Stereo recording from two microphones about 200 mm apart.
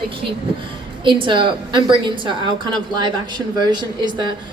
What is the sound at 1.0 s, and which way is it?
A woman's voice, 25° right (ahead or behind).